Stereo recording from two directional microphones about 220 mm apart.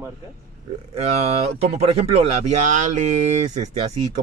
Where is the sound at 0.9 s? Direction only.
30° right (ahead or behind).